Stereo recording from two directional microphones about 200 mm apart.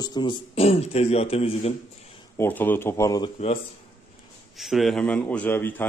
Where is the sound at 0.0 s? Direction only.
20° left (ahead or behind).